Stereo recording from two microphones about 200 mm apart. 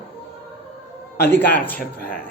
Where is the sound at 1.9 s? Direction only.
45° left (ahead or behind).